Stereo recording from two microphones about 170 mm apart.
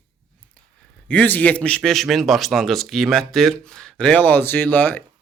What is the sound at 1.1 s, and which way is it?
A man's voice, 10° left (ahead or behind).